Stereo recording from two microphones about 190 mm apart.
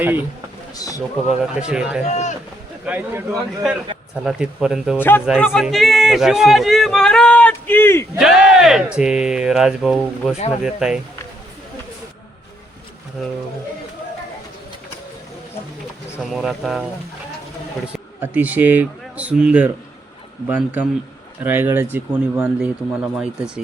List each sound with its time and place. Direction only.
0.0 s a man's voice: 10° right (ahead or behind)
0.8 s speech: 20° left (ahead or behind)
1.3 s a man's voice: 5° right (ahead or behind)
2.0 s speech: 35° left (ahead or behind)
2.8 s a man's voice: 10° right (ahead or behind)
4.9 s speech: 10° left (ahead or behind)
5.2 s a man's voice: centre (ahead or behind)
8.2 s a man's voice: 5° right (ahead or behind)
10.3 s speech: 35° left (ahead or behind)
10.6 s a man's voice: 5° right (ahead or behind)
16.3 s a man's voice: centre (ahead or behind)
17.8 s a man's voice: 10° right (ahead or behind)